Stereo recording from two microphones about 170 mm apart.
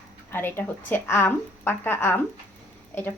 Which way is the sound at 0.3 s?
10° left (ahead or behind).